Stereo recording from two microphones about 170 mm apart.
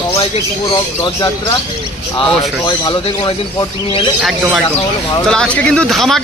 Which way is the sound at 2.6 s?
25° left (ahead or behind).